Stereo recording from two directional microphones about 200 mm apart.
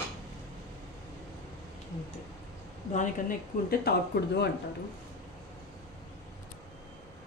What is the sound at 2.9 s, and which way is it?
Speech, 40° left (ahead or behind).